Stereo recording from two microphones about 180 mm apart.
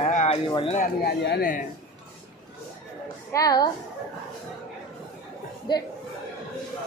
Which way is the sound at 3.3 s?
20° left (ahead or behind).